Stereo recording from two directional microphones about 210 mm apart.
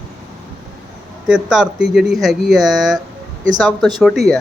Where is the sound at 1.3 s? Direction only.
5° right (ahead or behind).